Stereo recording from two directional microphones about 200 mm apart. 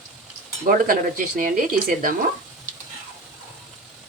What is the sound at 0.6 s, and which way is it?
Speech, 40° right (ahead or behind).